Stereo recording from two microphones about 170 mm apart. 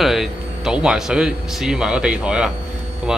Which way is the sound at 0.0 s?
Centre (ahead or behind).